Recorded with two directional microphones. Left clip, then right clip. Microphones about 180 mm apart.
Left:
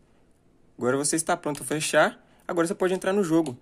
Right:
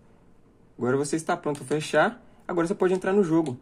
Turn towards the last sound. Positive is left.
turn(degrees=25)  # may be behind; listen again after turning